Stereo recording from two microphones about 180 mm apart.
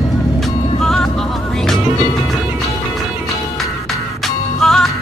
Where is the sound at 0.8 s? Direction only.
5° left (ahead or behind).